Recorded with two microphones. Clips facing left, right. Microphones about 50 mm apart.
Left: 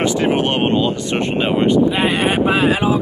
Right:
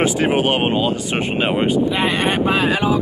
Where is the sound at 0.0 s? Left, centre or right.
Centre.